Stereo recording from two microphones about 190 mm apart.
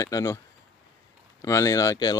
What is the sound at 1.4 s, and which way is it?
Speech, 15° left (ahead or behind).